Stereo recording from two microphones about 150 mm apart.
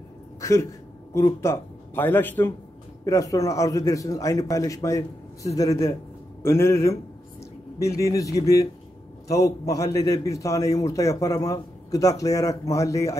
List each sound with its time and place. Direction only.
0.4 s a man's voice: 20° left (ahead or behind)